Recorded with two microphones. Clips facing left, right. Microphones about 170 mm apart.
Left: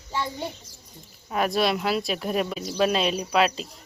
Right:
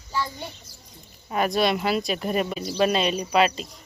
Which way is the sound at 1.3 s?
Centre (ahead or behind).